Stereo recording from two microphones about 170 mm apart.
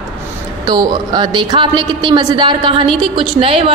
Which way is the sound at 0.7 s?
25° right (ahead or behind).